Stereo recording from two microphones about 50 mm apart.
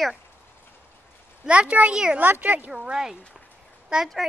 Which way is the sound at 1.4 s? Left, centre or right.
Right.